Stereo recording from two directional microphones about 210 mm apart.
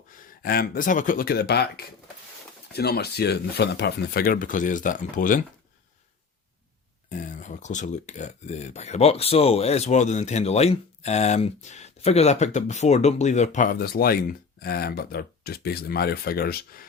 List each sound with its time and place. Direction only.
0.4 s speech: 45° left (ahead or behind)
7.1 s speech: 35° left (ahead or behind)